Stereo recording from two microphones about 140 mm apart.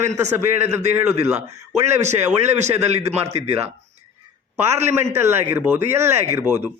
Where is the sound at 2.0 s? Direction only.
55° right (ahead or behind).